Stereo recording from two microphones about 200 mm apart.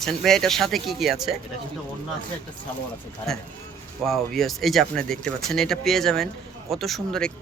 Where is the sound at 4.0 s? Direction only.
Centre (ahead or behind).